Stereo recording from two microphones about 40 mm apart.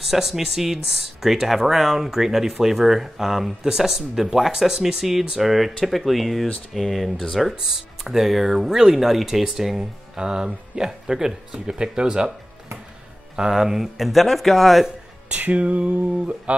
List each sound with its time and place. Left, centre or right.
0.0 s speech: centre
7.6 s speech: centre
13.5 s speech: centre
15.2 s speech: right